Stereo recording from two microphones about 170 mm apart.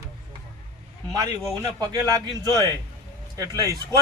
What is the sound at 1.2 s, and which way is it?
A man's voice, 20° right (ahead or behind).